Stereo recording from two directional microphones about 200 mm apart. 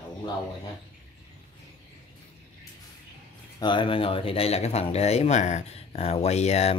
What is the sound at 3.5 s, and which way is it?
Speech, 25° left (ahead or behind).